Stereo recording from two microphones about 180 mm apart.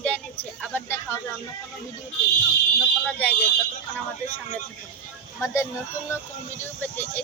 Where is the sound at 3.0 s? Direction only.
5° left (ahead or behind).